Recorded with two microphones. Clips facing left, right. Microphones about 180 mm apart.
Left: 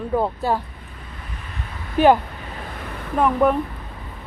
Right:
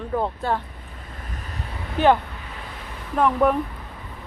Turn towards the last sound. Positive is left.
turn(degrees=5)  # may be behind; listen again after turning